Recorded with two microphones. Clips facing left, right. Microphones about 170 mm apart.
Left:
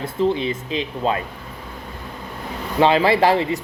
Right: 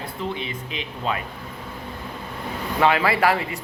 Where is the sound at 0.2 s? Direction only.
35° left (ahead or behind).